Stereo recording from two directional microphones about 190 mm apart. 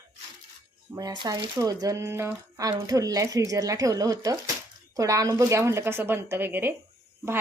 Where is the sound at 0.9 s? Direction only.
20° right (ahead or behind).